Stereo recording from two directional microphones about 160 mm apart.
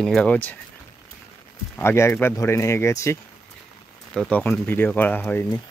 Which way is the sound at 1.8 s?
15° left (ahead or behind).